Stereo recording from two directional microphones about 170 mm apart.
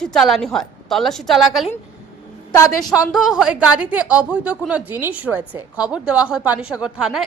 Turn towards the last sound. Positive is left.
turn(degrees=-5)  # may be behind; listen again after turning